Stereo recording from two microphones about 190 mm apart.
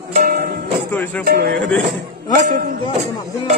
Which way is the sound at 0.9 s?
10° left (ahead or behind).